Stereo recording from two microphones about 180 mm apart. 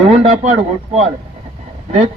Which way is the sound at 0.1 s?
35° right (ahead or behind).